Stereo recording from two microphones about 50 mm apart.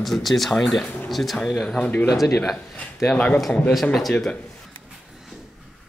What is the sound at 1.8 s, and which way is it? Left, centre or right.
Speech, left.